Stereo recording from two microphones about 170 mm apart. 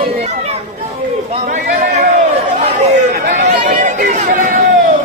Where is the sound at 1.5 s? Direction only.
55° right (ahead or behind).